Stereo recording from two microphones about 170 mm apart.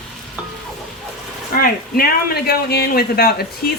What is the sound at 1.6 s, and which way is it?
A man's voice, 60° left (ahead or behind).